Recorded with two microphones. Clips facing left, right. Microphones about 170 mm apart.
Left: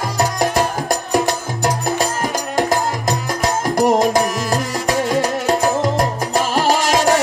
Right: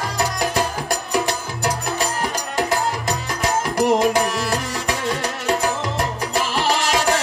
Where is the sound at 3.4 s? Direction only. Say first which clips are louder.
Left 3 dB; 40° left (ahead or behind).